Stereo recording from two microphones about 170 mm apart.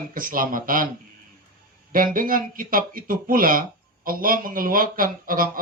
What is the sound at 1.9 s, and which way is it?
Speech, 55° right (ahead or behind).